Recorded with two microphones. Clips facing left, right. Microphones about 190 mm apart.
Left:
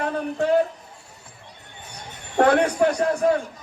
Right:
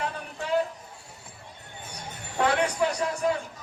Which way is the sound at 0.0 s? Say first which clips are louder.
Left 10 dB; 50° left (ahead or behind).